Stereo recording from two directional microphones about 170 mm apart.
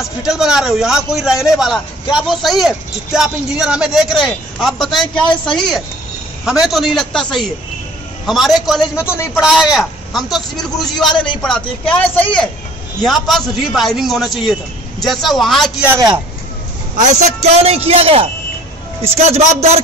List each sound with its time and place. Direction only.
0.2 s a man's voice: 5° right (ahead or behind)
8.3 s a man's voice: centre (ahead or behind)
15.9 s a man's voice: 20° right (ahead or behind)
16.9 s speech: 40° right (ahead or behind)